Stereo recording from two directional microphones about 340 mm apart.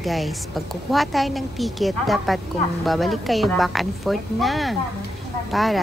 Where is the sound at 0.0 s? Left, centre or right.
Centre.